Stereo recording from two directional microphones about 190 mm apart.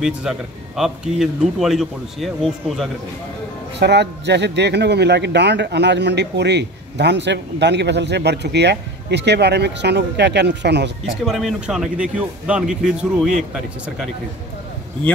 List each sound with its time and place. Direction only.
0.0 s speech: centre (ahead or behind)
3.8 s a man's voice: 65° right (ahead or behind)
11.2 s speech: centre (ahead or behind)